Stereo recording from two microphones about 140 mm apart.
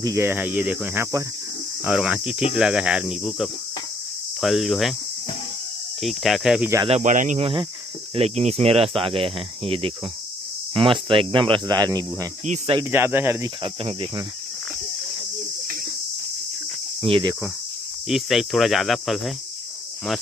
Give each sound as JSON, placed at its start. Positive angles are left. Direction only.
{"t": 0.0, "sound": "cricket", "side_deg": -20}
{"t": 1.9, "sound": "speech", "side_deg": -5}
{"t": 5.9, "sound": "speech", "side_deg": 0}
{"t": 7.0, "sound": "speech", "side_deg": -65}
{"t": 8.1, "sound": "speech", "side_deg": -45}
{"t": 12.9, "sound": "cricket", "side_deg": -15}
{"t": 13.6, "sound": "speech", "side_deg": -35}
{"t": 17.0, "sound": "speech", "side_deg": -40}
{"t": 18.0, "sound": "speech", "side_deg": 0}